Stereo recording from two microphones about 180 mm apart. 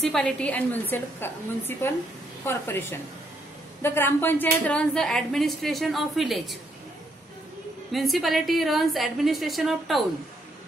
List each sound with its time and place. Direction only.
0.0 s a woman's voice: 5° left (ahead or behind)
7.9 s a woman's voice: centre (ahead or behind)